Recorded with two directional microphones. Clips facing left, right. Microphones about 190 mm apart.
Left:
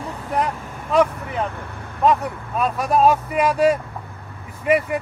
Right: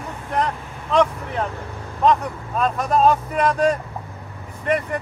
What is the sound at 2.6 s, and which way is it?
Speech, 5° left (ahead or behind).